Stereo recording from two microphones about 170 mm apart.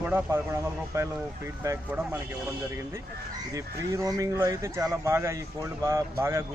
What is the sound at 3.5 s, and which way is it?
Speech, 20° right (ahead or behind).